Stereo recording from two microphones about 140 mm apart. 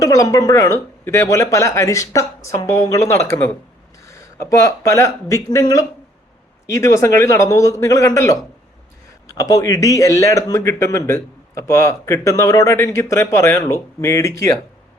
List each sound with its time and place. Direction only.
0.0 s a man's voice: 25° left (ahead or behind)